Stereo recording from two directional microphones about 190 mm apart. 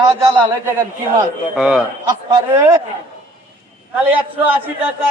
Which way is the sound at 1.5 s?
5° right (ahead or behind).